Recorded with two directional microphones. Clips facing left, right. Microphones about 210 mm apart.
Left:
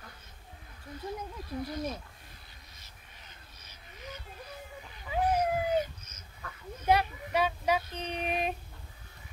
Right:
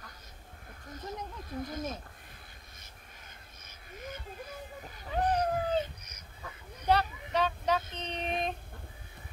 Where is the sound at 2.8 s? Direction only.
50° right (ahead or behind).